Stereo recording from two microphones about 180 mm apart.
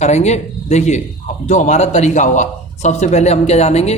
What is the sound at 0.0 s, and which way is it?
A man's voice, 40° left (ahead or behind).